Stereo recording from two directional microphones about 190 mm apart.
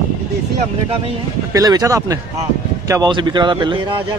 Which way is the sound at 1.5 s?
20° right (ahead or behind).